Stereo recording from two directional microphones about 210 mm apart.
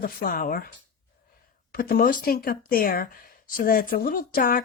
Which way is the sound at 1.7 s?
45° left (ahead or behind).